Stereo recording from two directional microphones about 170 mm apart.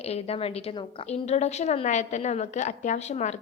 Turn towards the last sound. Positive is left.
turn(degrees=40)  # may be behind; listen again after turning